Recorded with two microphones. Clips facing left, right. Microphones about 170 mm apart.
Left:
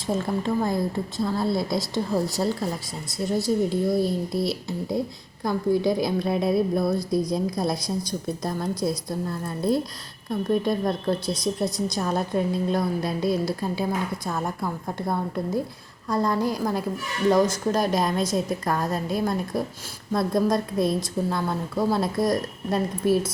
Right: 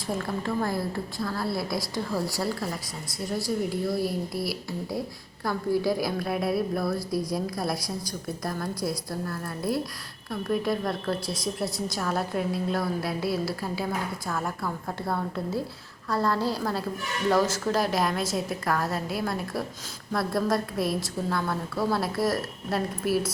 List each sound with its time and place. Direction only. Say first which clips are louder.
0.1 s a woman's voice: left 4 dB; 20° left (ahead or behind)